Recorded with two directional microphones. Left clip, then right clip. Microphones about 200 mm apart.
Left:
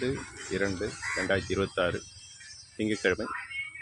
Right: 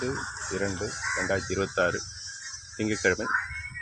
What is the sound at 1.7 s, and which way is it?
Speech, 5° left (ahead or behind).